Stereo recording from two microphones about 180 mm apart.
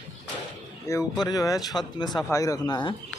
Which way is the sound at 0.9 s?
15° left (ahead or behind).